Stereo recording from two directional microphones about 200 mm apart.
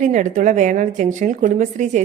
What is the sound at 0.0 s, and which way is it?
Speech, 40° right (ahead or behind).